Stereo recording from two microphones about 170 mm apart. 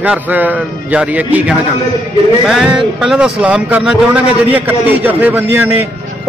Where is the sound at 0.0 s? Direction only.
10° right (ahead or behind).